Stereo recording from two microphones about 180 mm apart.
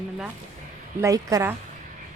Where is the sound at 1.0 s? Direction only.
20° right (ahead or behind).